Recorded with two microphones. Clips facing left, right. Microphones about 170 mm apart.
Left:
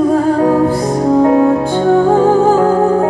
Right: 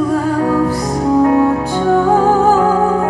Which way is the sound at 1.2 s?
30° left (ahead or behind).